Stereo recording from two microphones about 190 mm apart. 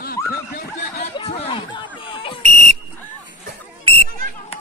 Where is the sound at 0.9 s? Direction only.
35° left (ahead or behind).